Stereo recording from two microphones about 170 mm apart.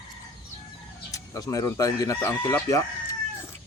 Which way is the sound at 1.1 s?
20° left (ahead or behind).